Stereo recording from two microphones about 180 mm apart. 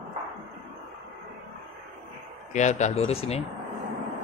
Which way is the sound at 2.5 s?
40° left (ahead or behind).